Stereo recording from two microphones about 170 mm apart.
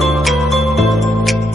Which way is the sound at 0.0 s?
Centre (ahead or behind).